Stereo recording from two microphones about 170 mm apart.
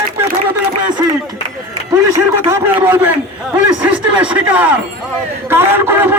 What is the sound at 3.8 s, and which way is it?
Music, 5° right (ahead or behind).